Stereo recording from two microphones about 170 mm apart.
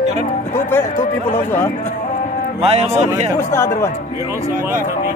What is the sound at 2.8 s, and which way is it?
Speech, 15° right (ahead or behind).